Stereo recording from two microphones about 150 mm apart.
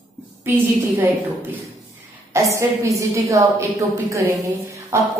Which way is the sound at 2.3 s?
20° right (ahead or behind).